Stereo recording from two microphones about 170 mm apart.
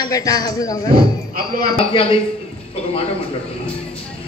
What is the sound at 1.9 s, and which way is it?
Speech, 30° left (ahead or behind).